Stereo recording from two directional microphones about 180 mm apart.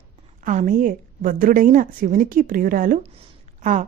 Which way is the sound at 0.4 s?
45° right (ahead or behind).